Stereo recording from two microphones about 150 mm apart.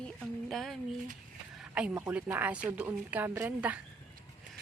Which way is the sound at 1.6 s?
5° right (ahead or behind).